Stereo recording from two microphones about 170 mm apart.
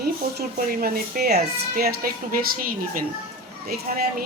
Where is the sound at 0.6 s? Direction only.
60° right (ahead or behind).